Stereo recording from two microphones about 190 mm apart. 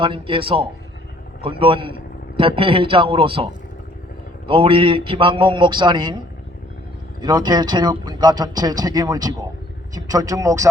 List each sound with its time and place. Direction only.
0.0 s a man's voice: 25° right (ahead or behind)
7.2 s a man's voice: 20° right (ahead or behind)